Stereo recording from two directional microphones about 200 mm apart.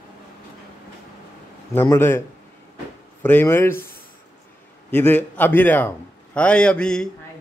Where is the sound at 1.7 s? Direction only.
10° left (ahead or behind).